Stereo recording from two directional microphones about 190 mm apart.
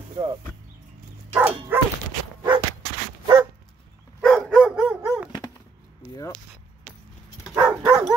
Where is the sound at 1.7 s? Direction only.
10° right (ahead or behind).